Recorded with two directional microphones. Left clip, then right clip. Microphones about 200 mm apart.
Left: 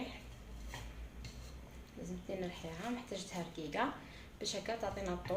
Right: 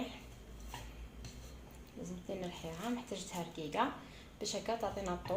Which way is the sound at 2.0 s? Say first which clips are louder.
Even; 15° right (ahead or behind).